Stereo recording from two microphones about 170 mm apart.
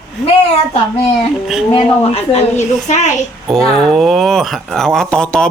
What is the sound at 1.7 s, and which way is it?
A woman's voice, 35° left (ahead or behind).